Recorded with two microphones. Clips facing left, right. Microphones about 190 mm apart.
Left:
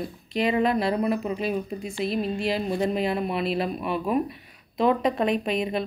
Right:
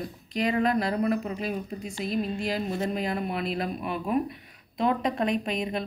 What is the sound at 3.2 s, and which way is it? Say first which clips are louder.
Speech: left 4 dB; 30° left (ahead or behind).